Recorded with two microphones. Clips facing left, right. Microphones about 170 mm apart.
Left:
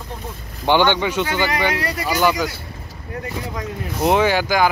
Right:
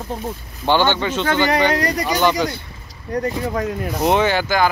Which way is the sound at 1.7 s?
40° right (ahead or behind).